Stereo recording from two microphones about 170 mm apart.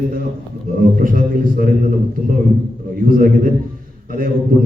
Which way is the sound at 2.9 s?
55° right (ahead or behind).